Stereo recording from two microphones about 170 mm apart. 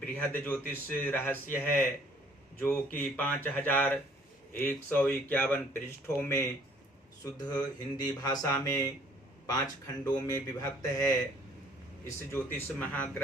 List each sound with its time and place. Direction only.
0.0 s speech: 10° left (ahead or behind)